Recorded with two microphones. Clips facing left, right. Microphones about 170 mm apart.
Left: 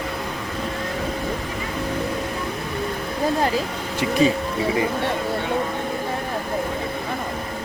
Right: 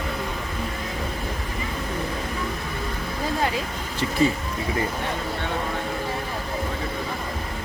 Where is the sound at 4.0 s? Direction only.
15° left (ahead or behind).